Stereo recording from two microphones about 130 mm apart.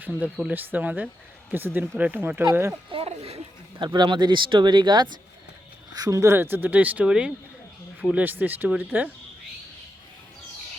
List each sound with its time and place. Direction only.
0.0 s speech: 10° right (ahead or behind)
2.9 s speech: 50° right (ahead or behind)
3.8 s speech: 35° right (ahead or behind); by 9.0 s 10° right (ahead or behind)